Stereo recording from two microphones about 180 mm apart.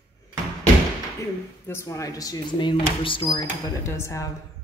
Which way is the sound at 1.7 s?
15° left (ahead or behind).